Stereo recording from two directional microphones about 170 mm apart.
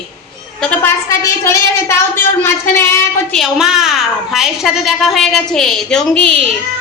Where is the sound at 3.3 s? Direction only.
Centre (ahead or behind).